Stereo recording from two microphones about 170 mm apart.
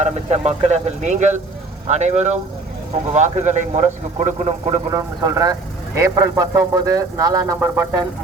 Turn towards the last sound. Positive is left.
turn(degrees=-15)  # may be behind; listen again after turning